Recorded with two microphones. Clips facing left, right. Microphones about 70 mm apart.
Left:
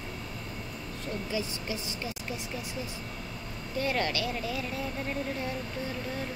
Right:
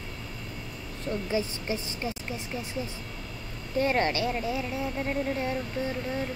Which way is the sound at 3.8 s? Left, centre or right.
Right.